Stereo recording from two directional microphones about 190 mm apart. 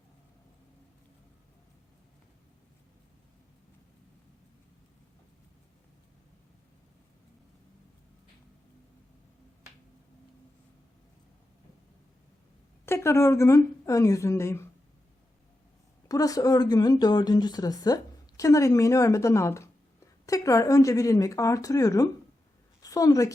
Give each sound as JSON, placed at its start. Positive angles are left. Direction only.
{"t": 12.8, "sound": "a woman's voice", "side_deg": 15}
{"t": 16.0, "sound": "a woman's voice", "side_deg": 20}